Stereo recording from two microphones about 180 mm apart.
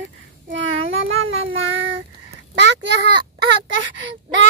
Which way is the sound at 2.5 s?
80° right.